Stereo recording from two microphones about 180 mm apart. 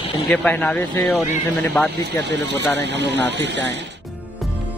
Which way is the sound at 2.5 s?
80° right.